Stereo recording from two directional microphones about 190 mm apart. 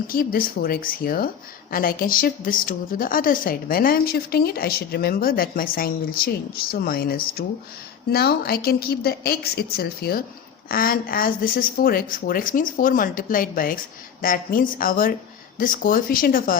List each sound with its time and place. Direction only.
0.1 s a woman's voice: 50° left (ahead or behind)